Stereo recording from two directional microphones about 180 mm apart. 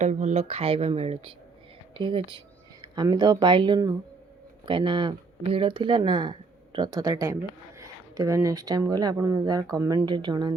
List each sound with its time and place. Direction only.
0.0 s speech: 40° right (ahead or behind)